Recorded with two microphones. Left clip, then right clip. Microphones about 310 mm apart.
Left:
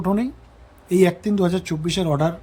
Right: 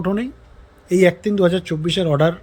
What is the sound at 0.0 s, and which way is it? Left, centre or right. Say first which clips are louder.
Speech: even; centre.